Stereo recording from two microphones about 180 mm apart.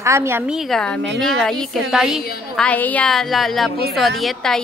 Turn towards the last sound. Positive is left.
turn(degrees=0)  # may be behind; listen again after turning